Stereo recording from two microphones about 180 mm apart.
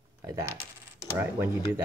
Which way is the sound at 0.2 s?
15° right (ahead or behind).